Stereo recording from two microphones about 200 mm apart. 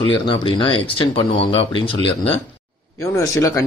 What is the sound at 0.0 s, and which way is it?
Speech, 25° left (ahead or behind).